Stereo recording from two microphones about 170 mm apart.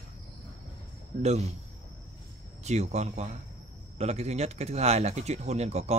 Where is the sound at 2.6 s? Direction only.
40° right (ahead or behind).